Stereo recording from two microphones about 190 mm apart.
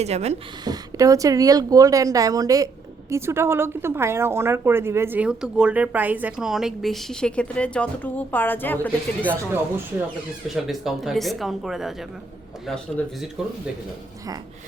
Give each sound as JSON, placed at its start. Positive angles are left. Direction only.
{"t": 0.0, "sound": "speech", "side_deg": -35}
{"t": 0.6, "sound": "a woman's voice", "side_deg": -20}
{"t": 10.5, "sound": "speech", "side_deg": 0}